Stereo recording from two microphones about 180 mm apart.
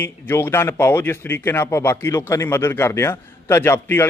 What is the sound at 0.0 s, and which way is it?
A man's voice, 15° left (ahead or behind).